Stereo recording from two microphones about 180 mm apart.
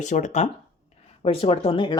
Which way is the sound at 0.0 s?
40° left (ahead or behind).